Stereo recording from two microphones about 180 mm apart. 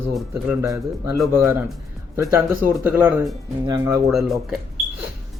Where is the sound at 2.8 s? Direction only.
10° right (ahead or behind).